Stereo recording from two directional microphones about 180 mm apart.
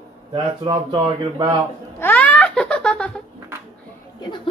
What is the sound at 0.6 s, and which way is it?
Speech, 30° right (ahead or behind).